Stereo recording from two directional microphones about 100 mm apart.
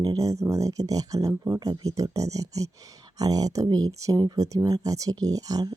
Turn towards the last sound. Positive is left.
turn(degrees=-40)  # may be behind; listen again after turning